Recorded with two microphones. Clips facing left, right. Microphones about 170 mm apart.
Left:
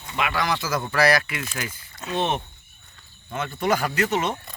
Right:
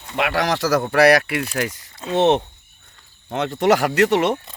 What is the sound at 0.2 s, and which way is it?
Speech, 75° right (ahead or behind).